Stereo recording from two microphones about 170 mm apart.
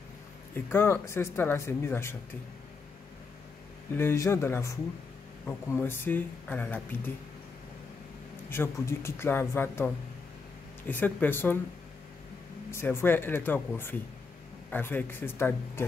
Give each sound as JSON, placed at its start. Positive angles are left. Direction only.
{"t": 0.6, "sound": "speech", "side_deg": 15}
{"t": 3.9, "sound": "speech", "side_deg": 15}
{"t": 8.5, "sound": "speech", "side_deg": 15}
{"t": 12.7, "sound": "speech", "side_deg": 15}